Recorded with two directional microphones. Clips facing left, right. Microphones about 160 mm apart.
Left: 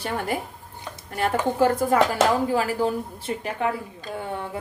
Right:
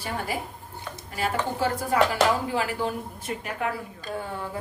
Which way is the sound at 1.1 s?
50° left (ahead or behind).